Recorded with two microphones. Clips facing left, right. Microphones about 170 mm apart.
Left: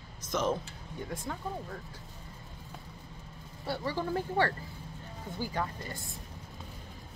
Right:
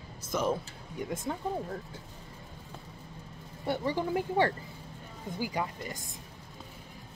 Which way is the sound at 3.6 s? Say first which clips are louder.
Right 3 dB; 20° right (ahead or behind).